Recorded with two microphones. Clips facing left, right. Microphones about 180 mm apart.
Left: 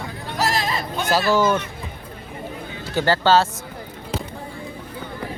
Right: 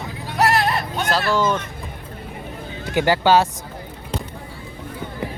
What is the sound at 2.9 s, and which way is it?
Speech, 15° right (ahead or behind).